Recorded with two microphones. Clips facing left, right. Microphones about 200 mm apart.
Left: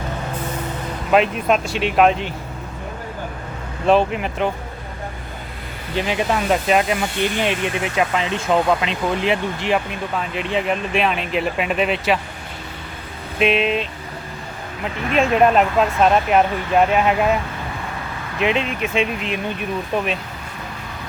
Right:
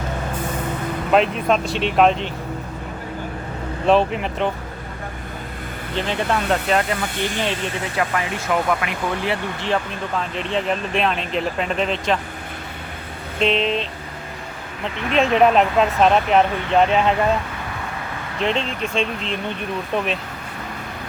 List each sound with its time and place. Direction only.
1.1 s speech: 5° left (ahead or behind)
3.8 s speech: centre (ahead or behind)
6.0 s speech: 10° left (ahead or behind)
13.4 s speech: 10° left (ahead or behind)
15.1 s speech: 5° left (ahead or behind)
18.3 s speech: 10° left (ahead or behind)